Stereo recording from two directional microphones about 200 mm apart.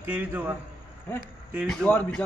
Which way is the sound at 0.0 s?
10° right (ahead or behind).